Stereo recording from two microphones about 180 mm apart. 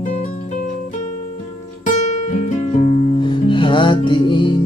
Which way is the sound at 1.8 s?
45° left (ahead or behind).